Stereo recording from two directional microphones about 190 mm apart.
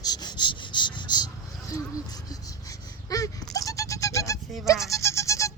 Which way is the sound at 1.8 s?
20° left (ahead or behind).